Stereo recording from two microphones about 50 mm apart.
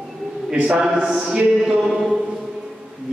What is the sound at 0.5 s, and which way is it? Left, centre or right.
A man's voice, right.